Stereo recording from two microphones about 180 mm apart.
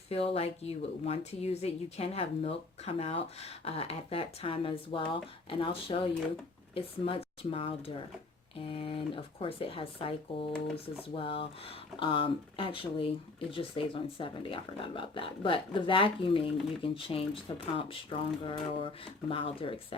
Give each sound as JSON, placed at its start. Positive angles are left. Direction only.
{"t": 0.1, "sound": "speech", "side_deg": 35}